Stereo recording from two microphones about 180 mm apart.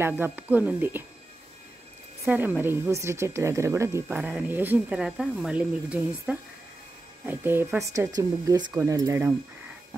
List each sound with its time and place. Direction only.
0.0 s a woman's voice: 10° right (ahead or behind)
2.2 s a woman's voice: 10° right (ahead or behind)